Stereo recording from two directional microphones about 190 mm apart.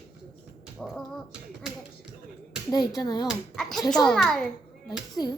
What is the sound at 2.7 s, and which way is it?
Speech, 20° left (ahead or behind).